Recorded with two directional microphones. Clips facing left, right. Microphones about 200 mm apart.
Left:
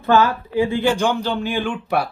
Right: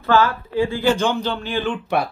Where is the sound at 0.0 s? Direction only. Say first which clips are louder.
Left 1 dB; 15° left (ahead or behind).